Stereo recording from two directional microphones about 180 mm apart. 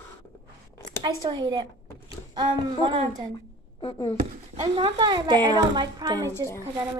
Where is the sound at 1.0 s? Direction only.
25° right (ahead or behind).